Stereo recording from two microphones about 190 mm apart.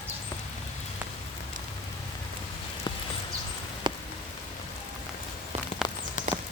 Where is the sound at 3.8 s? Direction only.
25° right (ahead or behind).